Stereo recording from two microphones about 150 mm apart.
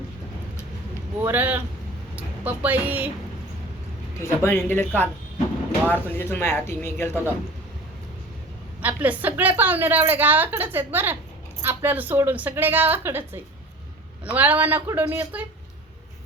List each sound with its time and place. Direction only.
1.2 s a woman's voice: 10° right (ahead or behind)
4.2 s speech: 15° left (ahead or behind)
5.9 s speech: 15° left (ahead or behind)
8.8 s a woman's voice: 10° right (ahead or behind)